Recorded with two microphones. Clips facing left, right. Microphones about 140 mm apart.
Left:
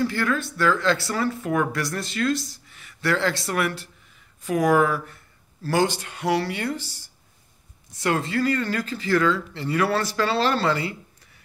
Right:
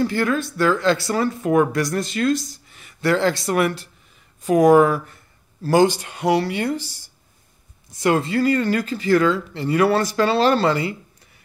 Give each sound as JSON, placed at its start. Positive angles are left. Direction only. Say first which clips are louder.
{"t": 0.0, "sound": "speech", "louder": "right 4 dB", "side_deg": -25}
{"t": 8.0, "sound": "speech", "louder": "right 5 dB", "side_deg": -15}